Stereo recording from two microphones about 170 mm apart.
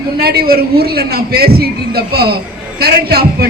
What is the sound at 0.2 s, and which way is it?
A man's voice, 65° right (ahead or behind).